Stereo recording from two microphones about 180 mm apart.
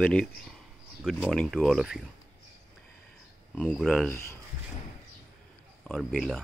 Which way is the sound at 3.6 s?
Centre (ahead or behind).